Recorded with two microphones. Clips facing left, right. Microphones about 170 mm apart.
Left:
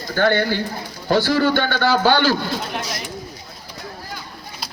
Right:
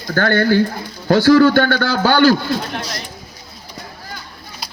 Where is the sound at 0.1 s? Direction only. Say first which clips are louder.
Right 3 dB; 45° right (ahead or behind).